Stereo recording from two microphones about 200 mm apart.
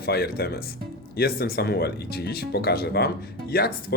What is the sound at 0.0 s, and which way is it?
Speech, 55° left (ahead or behind).